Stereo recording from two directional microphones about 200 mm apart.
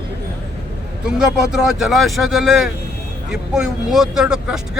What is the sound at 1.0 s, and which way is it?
Speech, 5° right (ahead or behind).